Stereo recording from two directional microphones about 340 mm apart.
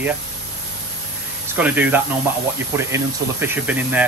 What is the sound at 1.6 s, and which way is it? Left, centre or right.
Speech, centre.